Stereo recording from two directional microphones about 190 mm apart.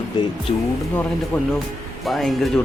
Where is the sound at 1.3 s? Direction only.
5° left (ahead or behind).